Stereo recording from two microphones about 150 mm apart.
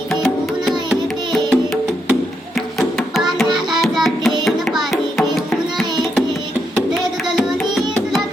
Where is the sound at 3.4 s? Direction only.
30° right (ahead or behind).